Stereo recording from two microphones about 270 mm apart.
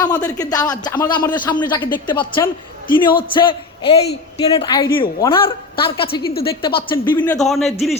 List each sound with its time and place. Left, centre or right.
0.2 s a man's voice: centre
7.3 s speech: centre